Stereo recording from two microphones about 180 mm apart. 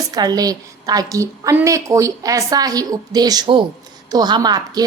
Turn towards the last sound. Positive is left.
turn(degrees=-20)  # may be behind; listen again after turning